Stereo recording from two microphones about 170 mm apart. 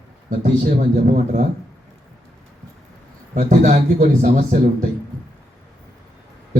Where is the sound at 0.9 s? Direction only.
45° right (ahead or behind).